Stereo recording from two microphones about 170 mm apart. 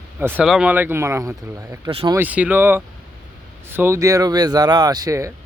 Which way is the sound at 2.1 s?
10° right (ahead or behind).